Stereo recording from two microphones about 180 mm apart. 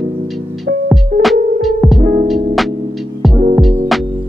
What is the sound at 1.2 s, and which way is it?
Music, centre (ahead or behind).